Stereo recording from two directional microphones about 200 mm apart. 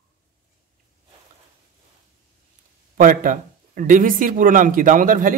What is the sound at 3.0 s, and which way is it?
Speech, 40° right (ahead or behind).